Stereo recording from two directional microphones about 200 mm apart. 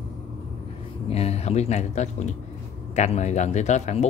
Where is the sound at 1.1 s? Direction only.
30° left (ahead or behind).